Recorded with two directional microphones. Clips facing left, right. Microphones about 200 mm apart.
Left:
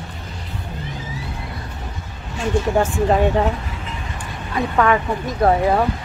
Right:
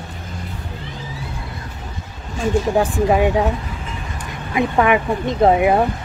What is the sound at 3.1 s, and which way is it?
Speech, 10° right (ahead or behind).